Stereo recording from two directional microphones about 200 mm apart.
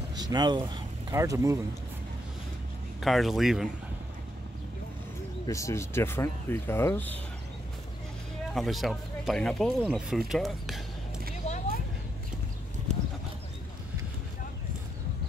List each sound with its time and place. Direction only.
0.1 s speech: 20° right (ahead or behind)
3.0 s speech: centre (ahead or behind)
5.5 s speech: 15° left (ahead or behind)
8.5 s speech: centre (ahead or behind)
11.4 s a sound: 35° left (ahead or behind)